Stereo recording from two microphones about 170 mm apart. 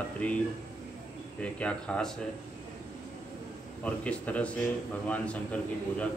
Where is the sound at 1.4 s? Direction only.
5° left (ahead or behind).